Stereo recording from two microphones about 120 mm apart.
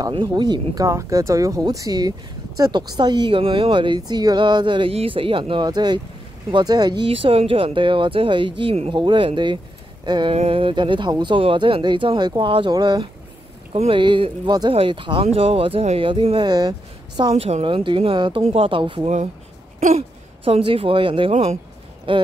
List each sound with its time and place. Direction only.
0.1 s speech: 40° right (ahead or behind)
7.1 s speech: 50° right (ahead or behind)
10.3 s speech: 55° right (ahead or behind); by 14.7 s 35° right (ahead or behind)
14.7 s speech: 50° right (ahead or behind)
16.0 s speech: 45° right (ahead or behind)
17.3 s speech: 60° right (ahead or behind)
17.6 s speech: 45° right (ahead or behind)
18.4 s speech: 55° right (ahead or behind)
19.8 s a sound: 70° right (ahead or behind)
20.4 s speech: 50° right (ahead or behind)
21.3 s speech: 60° right (ahead or behind)
22.1 s speech: 45° right (ahead or behind)